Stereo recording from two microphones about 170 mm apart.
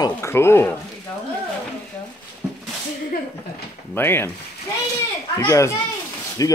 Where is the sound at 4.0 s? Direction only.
15° left (ahead or behind).